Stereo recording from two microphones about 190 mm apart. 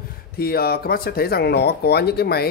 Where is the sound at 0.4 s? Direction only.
55° left (ahead or behind).